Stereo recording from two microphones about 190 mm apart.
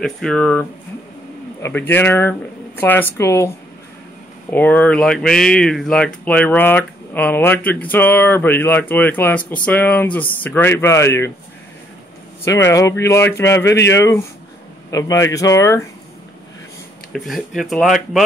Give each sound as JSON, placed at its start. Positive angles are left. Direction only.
{"t": 0.0, "sound": "speech", "side_deg": 5}
{"t": 12.7, "sound": "speech", "side_deg": 15}
{"t": 17.1, "sound": "speech", "side_deg": 0}